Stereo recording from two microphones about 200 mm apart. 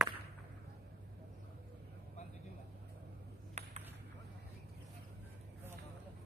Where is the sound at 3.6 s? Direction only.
35° right (ahead or behind).